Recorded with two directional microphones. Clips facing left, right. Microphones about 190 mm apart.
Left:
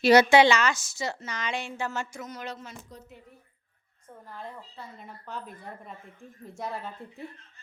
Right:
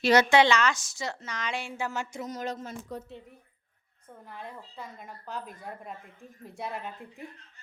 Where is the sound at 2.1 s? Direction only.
35° right (ahead or behind).